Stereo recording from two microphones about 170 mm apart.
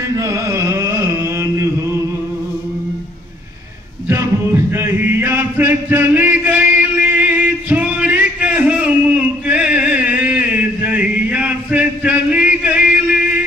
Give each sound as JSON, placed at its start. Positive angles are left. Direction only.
{"t": 0.2, "sound": "music", "side_deg": -15}
{"t": 4.1, "sound": "music", "side_deg": -15}